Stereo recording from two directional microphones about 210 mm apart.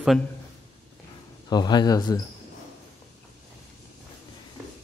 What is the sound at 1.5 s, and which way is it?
Speech, 20° left (ahead or behind).